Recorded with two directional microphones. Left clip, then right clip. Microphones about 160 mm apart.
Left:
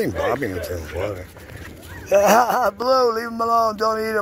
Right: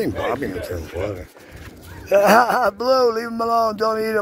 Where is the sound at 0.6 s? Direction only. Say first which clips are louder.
Even; 35° right (ahead or behind).